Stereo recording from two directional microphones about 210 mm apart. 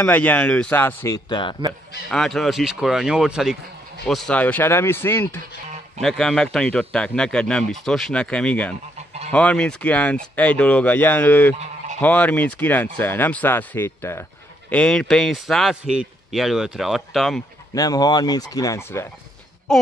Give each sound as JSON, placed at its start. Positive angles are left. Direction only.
{"t": 0.0, "sound": "speech", "side_deg": 10}
{"t": 2.0, "sound": "a man's voice", "side_deg": 0}
{"t": 17.7, "sound": "speech", "side_deg": 20}
{"t": 19.7, "sound": "a sound", "side_deg": 0}